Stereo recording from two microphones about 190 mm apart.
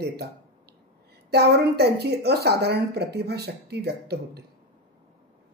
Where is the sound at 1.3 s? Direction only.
60° right (ahead or behind).